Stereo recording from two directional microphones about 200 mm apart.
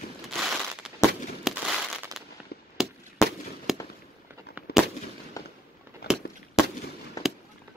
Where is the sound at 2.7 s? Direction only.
Centre (ahead or behind).